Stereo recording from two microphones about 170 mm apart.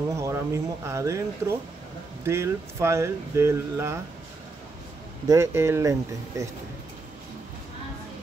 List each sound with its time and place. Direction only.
0.1 s speech: 15° right (ahead or behind)
5.3 s speech: 15° right (ahead or behind)